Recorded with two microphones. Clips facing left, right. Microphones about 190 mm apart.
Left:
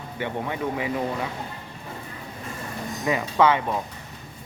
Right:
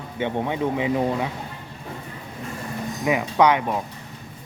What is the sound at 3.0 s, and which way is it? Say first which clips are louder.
Speech: right 2 dB; 15° right (ahead or behind).